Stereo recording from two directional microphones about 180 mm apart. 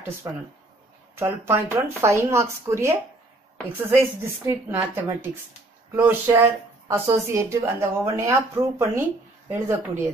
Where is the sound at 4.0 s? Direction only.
15° right (ahead or behind).